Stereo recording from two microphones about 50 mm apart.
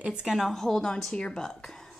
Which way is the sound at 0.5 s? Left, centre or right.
Centre.